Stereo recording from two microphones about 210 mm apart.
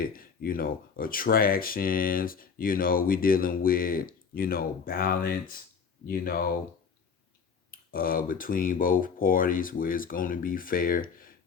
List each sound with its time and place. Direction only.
0.0 s speech: 45° left (ahead or behind)
7.7 s speech: 45° left (ahead or behind)